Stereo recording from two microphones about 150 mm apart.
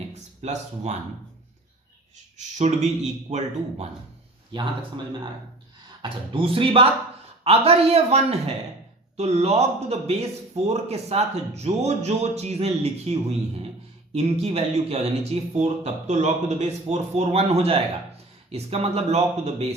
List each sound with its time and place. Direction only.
0.1 s speech: 50° right (ahead or behind)
2.6 s a man's voice: 50° right (ahead or behind)
4.5 s a man's voice: 35° right (ahead or behind)
6.0 s a man's voice: 35° right (ahead or behind)